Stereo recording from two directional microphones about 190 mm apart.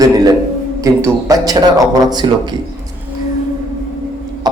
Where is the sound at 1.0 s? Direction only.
20° right (ahead or behind).